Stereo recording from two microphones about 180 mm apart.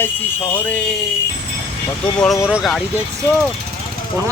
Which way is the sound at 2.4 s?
Centre (ahead or behind).